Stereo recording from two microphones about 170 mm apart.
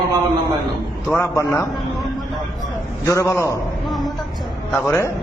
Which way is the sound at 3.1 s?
15° left (ahead or behind).